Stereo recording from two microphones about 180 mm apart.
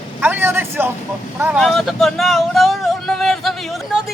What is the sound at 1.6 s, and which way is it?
Speech, centre (ahead or behind).